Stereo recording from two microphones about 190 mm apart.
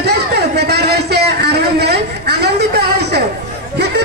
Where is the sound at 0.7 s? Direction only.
60° right (ahead or behind).